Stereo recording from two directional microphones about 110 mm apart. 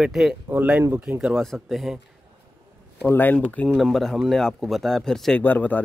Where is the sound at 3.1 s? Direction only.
15° left (ahead or behind).